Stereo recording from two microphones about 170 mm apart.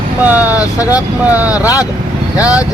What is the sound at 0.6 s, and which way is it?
Speech, 20° left (ahead or behind).